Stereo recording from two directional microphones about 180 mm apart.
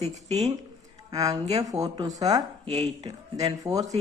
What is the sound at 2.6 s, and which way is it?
Speech, 40° right (ahead or behind).